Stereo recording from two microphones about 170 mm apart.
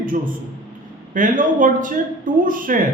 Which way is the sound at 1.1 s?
50° right (ahead or behind).